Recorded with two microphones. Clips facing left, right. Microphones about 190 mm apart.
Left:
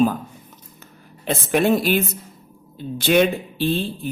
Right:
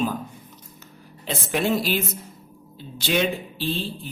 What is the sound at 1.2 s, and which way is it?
Speech, 55° left (ahead or behind).